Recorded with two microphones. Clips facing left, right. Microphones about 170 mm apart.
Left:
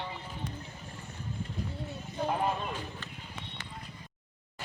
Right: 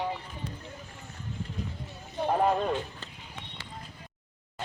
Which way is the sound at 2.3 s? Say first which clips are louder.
Right 7 dB; 40° right (ahead or behind).